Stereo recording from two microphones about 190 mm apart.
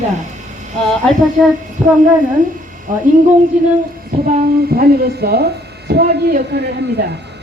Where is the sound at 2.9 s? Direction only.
45° right (ahead or behind).